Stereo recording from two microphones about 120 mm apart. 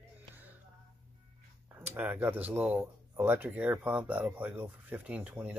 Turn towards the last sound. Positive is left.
turn(degrees=-10)  # may be behind; listen again after turning